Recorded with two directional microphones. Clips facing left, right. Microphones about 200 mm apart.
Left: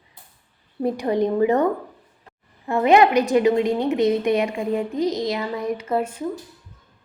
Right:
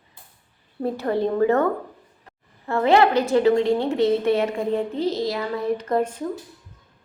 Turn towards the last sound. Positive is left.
turn(degrees=10)  # may be behind; listen again after turning